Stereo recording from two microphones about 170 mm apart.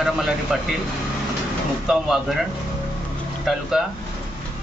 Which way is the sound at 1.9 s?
5° right (ahead or behind).